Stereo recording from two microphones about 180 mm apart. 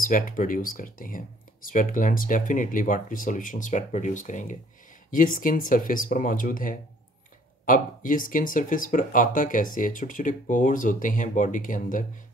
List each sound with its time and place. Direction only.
0.0 s speech: 50° left (ahead or behind)